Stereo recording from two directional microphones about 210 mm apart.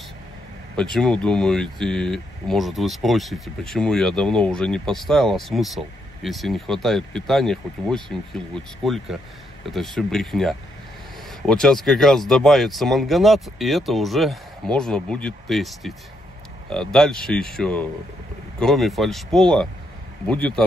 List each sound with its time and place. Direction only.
0.7 s speech: centre (ahead or behind)
16.9 s speech: centre (ahead or behind)